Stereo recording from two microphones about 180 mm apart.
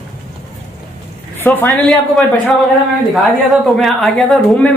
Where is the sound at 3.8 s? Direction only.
Centre (ahead or behind).